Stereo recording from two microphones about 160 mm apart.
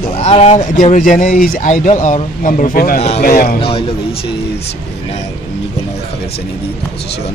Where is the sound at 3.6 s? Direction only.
35° left (ahead or behind).